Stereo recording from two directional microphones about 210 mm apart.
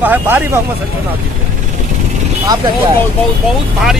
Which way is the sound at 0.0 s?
10° right (ahead or behind).